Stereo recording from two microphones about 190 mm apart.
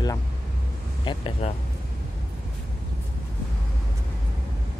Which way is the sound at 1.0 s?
30° left (ahead or behind).